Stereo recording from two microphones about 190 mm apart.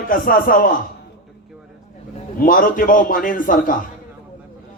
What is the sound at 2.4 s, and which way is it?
A man's voice, 45° left (ahead or behind).